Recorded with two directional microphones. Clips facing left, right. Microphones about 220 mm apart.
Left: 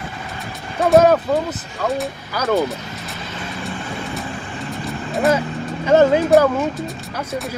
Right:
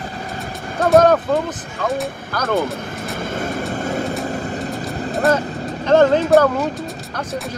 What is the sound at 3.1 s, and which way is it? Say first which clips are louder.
Vehicle: right 9 dB; 50° right (ahead or behind).